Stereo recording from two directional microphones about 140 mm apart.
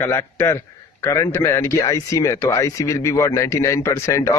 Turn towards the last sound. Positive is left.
turn(degrees=20)  # may be behind; listen again after turning